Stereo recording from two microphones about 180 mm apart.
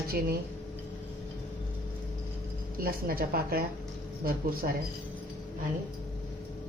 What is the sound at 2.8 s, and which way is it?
Speech, 55° right (ahead or behind).